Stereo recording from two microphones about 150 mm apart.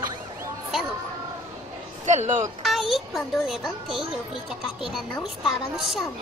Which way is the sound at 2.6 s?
Centre (ahead or behind).